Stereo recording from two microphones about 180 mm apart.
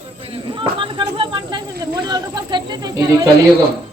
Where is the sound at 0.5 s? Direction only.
25° right (ahead or behind).